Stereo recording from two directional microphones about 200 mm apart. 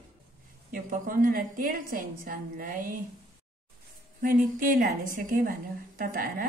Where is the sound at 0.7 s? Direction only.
45° right (ahead or behind).